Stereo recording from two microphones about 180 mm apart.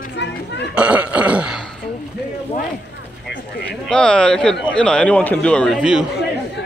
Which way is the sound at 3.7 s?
5° left (ahead or behind).